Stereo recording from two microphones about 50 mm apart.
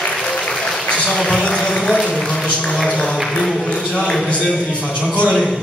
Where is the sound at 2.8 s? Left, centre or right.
Centre.